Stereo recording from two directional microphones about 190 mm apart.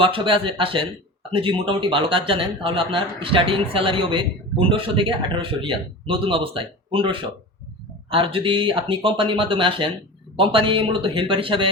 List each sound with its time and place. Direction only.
0.0 s speech: 25° right (ahead or behind)